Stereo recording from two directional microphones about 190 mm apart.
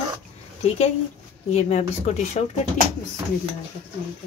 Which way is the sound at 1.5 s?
35° left (ahead or behind).